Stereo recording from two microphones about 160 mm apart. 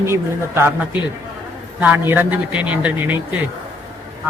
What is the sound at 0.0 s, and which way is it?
Speech, 15° right (ahead or behind).